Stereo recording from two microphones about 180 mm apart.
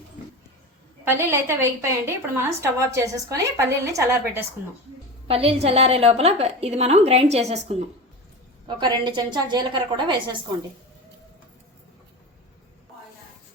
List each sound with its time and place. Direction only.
1.0 s a woman's voice: 15° right (ahead or behind)
5.3 s a woman's voice: 35° right (ahead or behind)
8.6 s a woman's voice: 25° right (ahead or behind)